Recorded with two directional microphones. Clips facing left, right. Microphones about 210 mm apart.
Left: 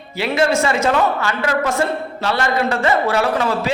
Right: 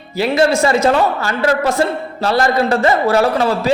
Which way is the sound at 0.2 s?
35° right (ahead or behind).